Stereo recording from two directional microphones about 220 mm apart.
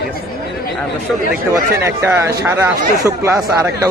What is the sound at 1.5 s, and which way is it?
Speech, 10° right (ahead or behind).